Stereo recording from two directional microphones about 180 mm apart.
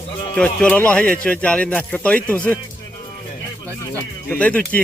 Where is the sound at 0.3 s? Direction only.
5° left (ahead or behind).